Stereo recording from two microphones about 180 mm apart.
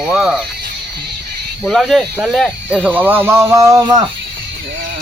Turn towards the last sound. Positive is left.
turn(degrees=-20)  # may be behind; listen again after turning